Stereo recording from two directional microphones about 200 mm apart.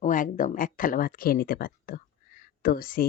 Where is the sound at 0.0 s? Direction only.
40° left (ahead or behind).